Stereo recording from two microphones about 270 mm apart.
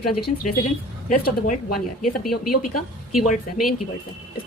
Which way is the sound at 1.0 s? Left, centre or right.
Left.